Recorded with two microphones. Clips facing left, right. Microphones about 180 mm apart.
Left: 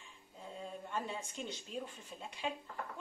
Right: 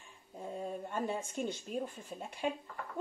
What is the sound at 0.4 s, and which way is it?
Speech, 50° right (ahead or behind).